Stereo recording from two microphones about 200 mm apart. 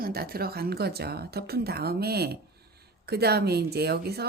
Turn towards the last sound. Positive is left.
turn(degrees=-55)  # may be behind; listen again after turning